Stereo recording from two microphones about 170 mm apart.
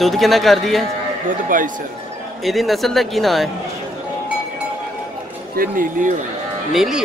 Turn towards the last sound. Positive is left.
turn(degrees=0)  # may be behind; listen again after turning